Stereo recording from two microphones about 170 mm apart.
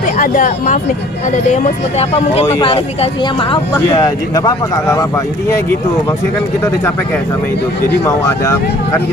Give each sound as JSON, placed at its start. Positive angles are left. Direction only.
{"t": 0.0, "sound": "speech", "side_deg": 50}
{"t": 7.9, "sound": "speech", "side_deg": 15}